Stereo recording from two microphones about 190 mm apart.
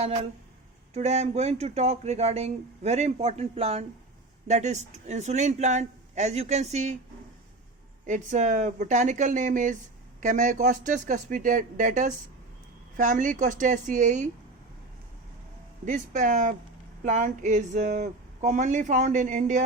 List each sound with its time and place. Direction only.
0.9 s speech: 35° right (ahead or behind)
8.0 s speech: 40° right (ahead or behind)
15.9 s speech: 40° right (ahead or behind)